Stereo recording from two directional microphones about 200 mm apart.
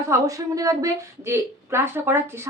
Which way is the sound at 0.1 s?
15° right (ahead or behind).